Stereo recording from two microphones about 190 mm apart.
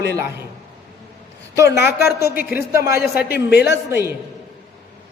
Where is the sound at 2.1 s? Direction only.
55° left (ahead or behind).